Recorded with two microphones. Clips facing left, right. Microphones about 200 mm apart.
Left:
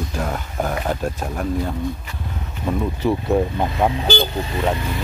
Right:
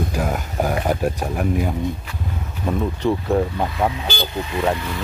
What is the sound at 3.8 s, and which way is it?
Speech, 30° left (ahead or behind).